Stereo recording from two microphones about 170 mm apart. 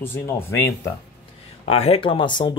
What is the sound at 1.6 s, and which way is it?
Speech, 35° left (ahead or behind).